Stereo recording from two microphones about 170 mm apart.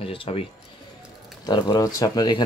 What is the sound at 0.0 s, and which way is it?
Speech, 30° left (ahead or behind).